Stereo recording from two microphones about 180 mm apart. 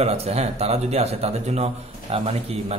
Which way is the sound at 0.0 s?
35° right (ahead or behind).